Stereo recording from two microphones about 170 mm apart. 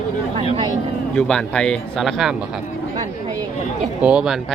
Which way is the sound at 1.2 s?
5° left (ahead or behind).